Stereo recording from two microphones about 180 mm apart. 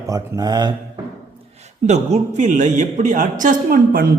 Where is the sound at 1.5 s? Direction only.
40° right (ahead or behind).